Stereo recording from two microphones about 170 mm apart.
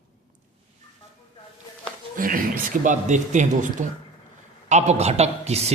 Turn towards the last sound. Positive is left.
turn(degrees=-40)  # may be behind; listen again after turning